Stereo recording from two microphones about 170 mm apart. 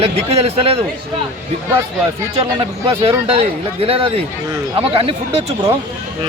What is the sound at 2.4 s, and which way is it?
Speech, 35° right (ahead or behind).